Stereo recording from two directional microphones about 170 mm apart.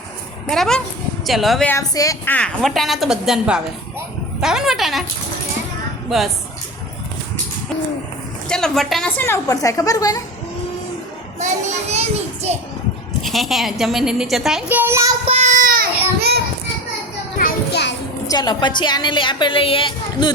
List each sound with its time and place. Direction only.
0.4 s a child's voice: centre (ahead or behind)
1.6 s a woman's voice: 15° left (ahead or behind)
2.3 s a child's voice: 5° left (ahead or behind)
6.1 s a child's voice: centre (ahead or behind)
8.4 s a woman's voice: 5° left (ahead or behind); by 10.2 s 20° left (ahead or behind)
11.3 s a child's voice: 45° right (ahead or behind)
13.2 s a child's voice: centre (ahead or behind); by 15.1 s 15° right (ahead or behind)
15.2 s child singing: 40° right (ahead or behind); by 16.4 s 65° right (ahead or behind)
17.4 s children playing: 75° left (ahead or behind)
18.3 s a woman's voice: 25° left (ahead or behind)